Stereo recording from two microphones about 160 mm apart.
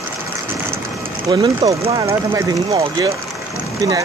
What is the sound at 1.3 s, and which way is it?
Speech, 30° right (ahead or behind).